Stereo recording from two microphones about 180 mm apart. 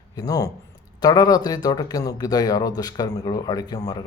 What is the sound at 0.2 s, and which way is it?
Speech, 20° left (ahead or behind).